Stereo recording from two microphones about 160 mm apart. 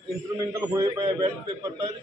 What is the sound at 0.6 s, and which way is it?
Speech, 25° right (ahead or behind).